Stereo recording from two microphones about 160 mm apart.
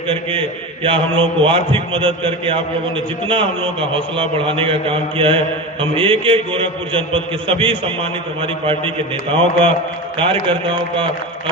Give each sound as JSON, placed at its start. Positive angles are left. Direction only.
{"t": 0.1, "sound": "a man's voice", "side_deg": -35}